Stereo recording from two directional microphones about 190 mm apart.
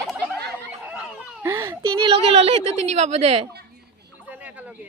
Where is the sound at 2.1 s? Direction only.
30° right (ahead or behind).